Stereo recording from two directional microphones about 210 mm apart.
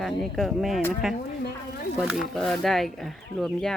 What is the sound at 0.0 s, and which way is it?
Speech, centre (ahead or behind).